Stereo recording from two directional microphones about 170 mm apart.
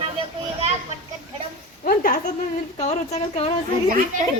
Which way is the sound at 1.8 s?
60° left (ahead or behind).